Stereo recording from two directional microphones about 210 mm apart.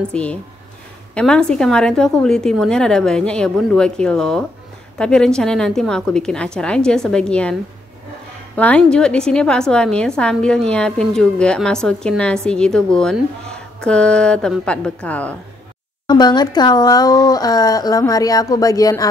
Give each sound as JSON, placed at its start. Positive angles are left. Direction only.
{"t": 0.1, "sound": "a woman's voice", "side_deg": 5}
{"t": 8.5, "sound": "a woman's voice", "side_deg": 5}
{"t": 16.1, "sound": "speech", "side_deg": 20}